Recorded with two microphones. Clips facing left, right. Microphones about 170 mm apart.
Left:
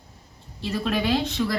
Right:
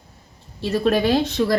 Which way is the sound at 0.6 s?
40° right (ahead or behind).